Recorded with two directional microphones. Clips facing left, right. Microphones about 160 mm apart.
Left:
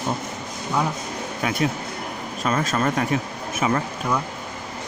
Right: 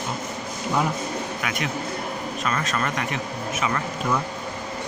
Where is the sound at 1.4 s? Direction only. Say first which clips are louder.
Left 10 dB; 35° left (ahead or behind).